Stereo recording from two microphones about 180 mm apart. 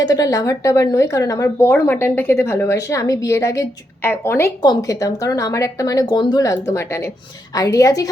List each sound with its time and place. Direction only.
0.0 s a woman's voice: 20° left (ahead or behind)